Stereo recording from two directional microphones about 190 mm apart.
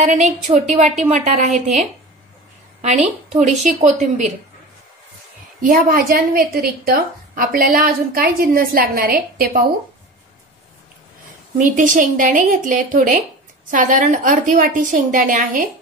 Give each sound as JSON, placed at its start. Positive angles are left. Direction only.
{"t": 0.0, "sound": "a woman's voice", "side_deg": -40}
{"t": 5.6, "sound": "a woman's voice", "side_deg": -50}
{"t": 11.5, "sound": "a woman's voice", "side_deg": -45}